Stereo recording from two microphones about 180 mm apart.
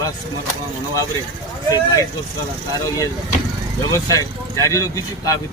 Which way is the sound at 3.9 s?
20° left (ahead or behind).